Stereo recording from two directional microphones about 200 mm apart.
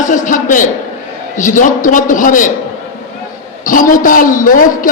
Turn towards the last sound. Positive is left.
turn(degrees=45)  # may be behind; listen again after turning